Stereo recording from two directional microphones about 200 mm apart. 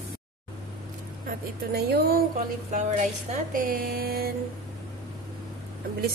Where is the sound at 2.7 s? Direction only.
35° right (ahead or behind).